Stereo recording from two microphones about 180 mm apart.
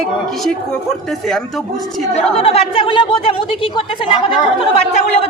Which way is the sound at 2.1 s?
35° left (ahead or behind).